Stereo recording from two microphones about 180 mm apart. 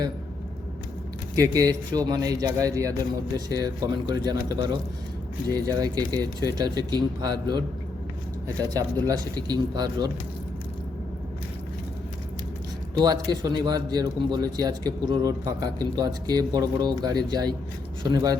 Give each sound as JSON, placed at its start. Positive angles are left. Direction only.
{"t": 1.4, "sound": "a man's voice", "side_deg": -20}
{"t": 12.9, "sound": "a man's voice", "side_deg": -20}